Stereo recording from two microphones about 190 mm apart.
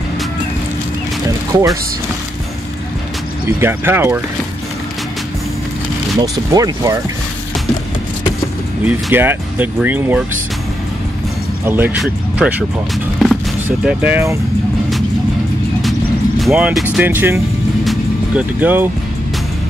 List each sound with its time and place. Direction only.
1.5 s speech: 15° right (ahead or behind)
3.4 s speech: 10° right (ahead or behind)
6.2 s speech: 20° right (ahead or behind)
8.8 s speech: 10° right (ahead or behind)
11.6 s speech: 10° right (ahead or behind)
13.7 s speech: 10° right (ahead or behind)
16.3 s speech: 5° right (ahead or behind)
17.8 s music: 5° right (ahead or behind)